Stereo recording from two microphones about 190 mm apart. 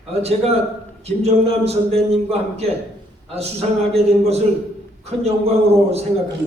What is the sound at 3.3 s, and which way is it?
A man's voice, 35° right (ahead or behind).